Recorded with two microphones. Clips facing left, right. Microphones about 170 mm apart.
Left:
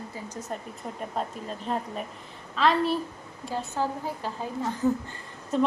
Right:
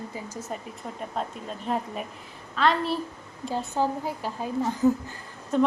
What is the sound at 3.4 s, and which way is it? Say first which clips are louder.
A woman's voice: right 3 dB; 20° right (ahead or behind).